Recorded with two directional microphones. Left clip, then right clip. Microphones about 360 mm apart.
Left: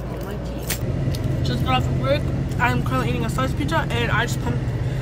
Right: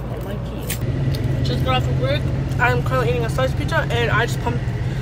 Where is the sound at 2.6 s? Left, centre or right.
Centre.